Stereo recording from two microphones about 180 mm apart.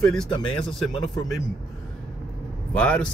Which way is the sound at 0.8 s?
Centre (ahead or behind).